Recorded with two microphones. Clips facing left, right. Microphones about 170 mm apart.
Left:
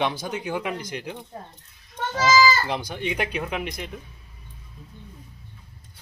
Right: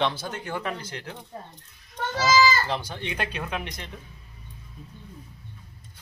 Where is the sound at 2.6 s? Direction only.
15° left (ahead or behind).